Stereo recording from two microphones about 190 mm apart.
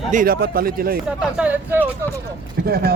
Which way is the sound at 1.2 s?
5° right (ahead or behind).